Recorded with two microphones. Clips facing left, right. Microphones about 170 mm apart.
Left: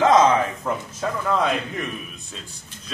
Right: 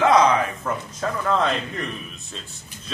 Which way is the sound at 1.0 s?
5° left (ahead or behind).